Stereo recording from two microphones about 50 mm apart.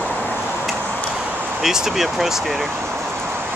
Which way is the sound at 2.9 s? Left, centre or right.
Right.